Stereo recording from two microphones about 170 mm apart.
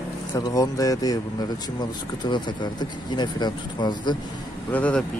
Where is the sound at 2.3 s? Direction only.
25° left (ahead or behind).